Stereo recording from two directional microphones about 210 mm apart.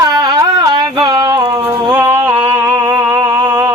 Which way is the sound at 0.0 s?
15° right (ahead or behind).